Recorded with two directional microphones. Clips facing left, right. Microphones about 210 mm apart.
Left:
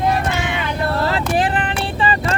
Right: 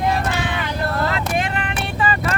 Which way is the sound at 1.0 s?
30° left (ahead or behind).